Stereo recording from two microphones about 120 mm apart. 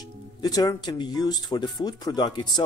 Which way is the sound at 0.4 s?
30° left (ahead or behind).